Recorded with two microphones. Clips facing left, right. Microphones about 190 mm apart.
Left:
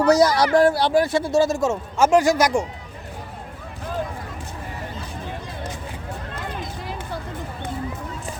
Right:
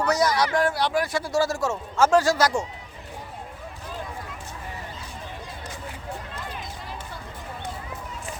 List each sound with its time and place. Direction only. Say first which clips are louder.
0.0 s a man's voice: left 6 dB; 35° left (ahead or behind); by 2.6 s 15° left (ahead or behind)